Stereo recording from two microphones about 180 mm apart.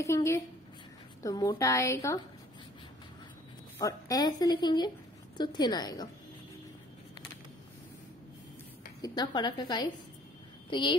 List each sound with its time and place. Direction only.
0.0 s a woman's voice: 15° left (ahead or behind)
3.7 s speech: 20° left (ahead or behind)
9.0 s a woman's voice: 20° left (ahead or behind)